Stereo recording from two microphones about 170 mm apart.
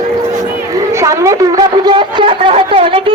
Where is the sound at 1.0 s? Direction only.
20° right (ahead or behind).